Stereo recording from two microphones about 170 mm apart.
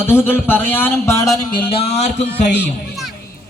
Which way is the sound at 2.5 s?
80° left.